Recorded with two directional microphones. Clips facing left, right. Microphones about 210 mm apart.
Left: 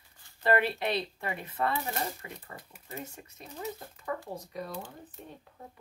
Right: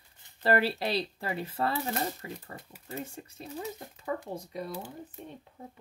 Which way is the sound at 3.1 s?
30° right (ahead or behind).